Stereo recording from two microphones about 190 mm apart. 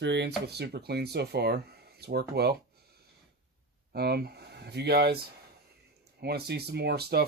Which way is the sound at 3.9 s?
55° right (ahead or behind).